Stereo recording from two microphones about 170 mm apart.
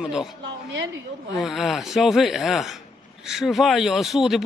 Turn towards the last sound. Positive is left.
turn(degrees=0)  # may be behind; listen again after turning